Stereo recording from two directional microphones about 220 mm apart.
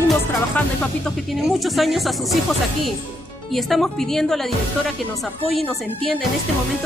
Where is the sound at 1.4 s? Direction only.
Centre (ahead or behind).